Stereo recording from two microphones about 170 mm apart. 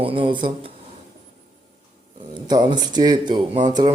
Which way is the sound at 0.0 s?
30° right (ahead or behind).